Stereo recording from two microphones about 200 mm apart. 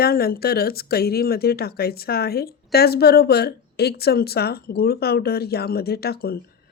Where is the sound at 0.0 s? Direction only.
50° left (ahead or behind).